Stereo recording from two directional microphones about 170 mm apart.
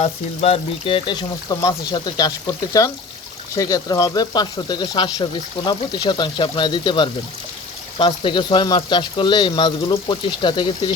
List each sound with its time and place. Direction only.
0.0 s speech: 35° left (ahead or behind)